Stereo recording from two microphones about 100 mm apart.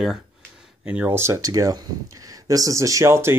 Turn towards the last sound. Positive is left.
turn(degrees=-25)  # may be behind; listen again after turning